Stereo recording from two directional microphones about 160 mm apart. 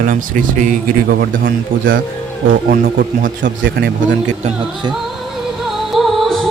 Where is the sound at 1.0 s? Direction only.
75° right (ahead or behind); by 4.5 s 55° right (ahead or behind).